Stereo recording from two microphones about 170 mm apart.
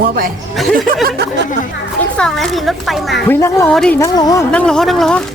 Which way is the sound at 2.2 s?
Centre (ahead or behind).